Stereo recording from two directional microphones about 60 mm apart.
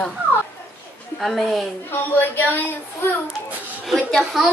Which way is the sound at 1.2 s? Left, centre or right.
Centre.